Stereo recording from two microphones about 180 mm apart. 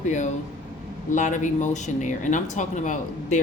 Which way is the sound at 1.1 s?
45° left (ahead or behind).